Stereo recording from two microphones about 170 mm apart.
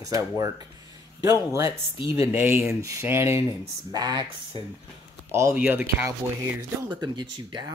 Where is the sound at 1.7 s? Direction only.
30° left (ahead or behind).